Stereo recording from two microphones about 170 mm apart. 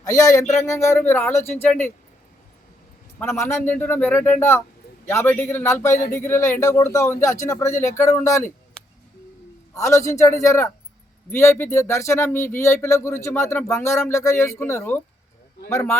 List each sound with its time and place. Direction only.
0.0 s speech: 20° left (ahead or behind)
3.2 s speech: 15° left (ahead or behind)
9.7 s speech: 20° left (ahead or behind)